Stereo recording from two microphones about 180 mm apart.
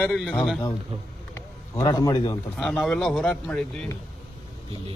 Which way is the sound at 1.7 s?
20° left (ahead or behind).